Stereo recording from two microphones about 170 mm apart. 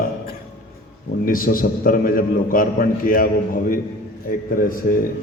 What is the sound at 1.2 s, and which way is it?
A man's voice, 55° left (ahead or behind).